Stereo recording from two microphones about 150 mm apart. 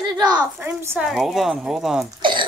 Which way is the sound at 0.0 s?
30° right (ahead or behind).